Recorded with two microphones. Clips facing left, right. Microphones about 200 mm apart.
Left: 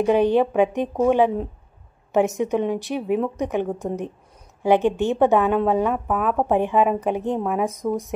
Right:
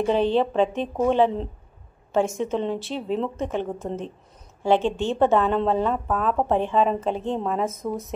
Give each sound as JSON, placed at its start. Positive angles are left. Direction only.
{"t": 0.0, "sound": "a woman's voice", "side_deg": 15}